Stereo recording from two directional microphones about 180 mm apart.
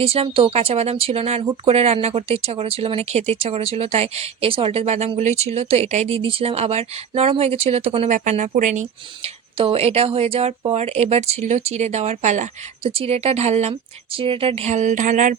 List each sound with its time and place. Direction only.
0.0 s speech: 30° right (ahead or behind)
9.2 s speech: 30° right (ahead or behind)